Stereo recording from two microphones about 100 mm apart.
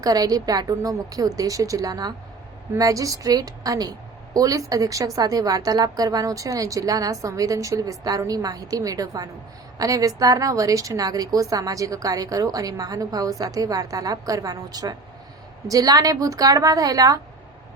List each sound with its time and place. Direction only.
0.0 s a woman's voice: 40° right (ahead or behind)